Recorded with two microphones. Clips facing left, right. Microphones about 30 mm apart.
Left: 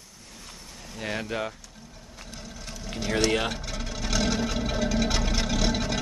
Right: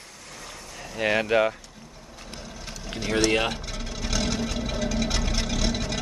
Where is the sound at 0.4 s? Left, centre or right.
Right.